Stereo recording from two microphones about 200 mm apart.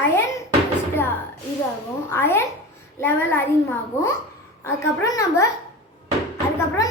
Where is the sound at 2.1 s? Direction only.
10° left (ahead or behind).